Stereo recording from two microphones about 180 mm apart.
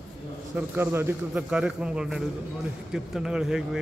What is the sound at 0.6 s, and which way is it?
A man's voice, 10° right (ahead or behind).